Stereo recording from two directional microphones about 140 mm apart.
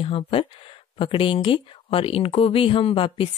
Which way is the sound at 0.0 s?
40° left (ahead or behind).